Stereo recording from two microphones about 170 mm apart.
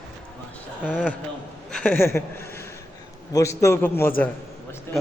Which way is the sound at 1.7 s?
10° left (ahead or behind).